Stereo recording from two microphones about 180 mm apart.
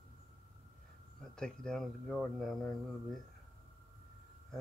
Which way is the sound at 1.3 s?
5° left (ahead or behind).